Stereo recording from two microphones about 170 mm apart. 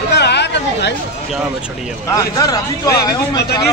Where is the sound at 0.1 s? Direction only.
80° left.